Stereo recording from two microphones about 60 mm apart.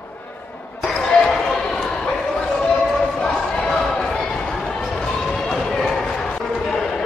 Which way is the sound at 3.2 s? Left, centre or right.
Centre.